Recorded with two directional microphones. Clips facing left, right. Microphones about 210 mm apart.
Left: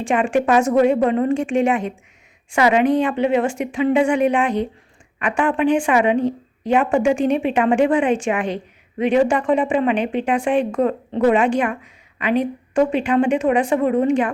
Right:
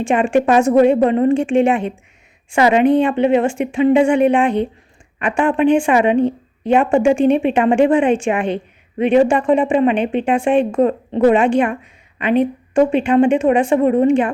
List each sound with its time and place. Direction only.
0.0 s a woman's voice: 25° right (ahead or behind)